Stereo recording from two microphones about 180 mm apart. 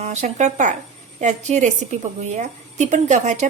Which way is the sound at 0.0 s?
40° right (ahead or behind).